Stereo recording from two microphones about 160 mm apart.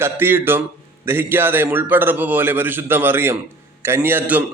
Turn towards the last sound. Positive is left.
turn(degrees=-10)  # may be behind; listen again after turning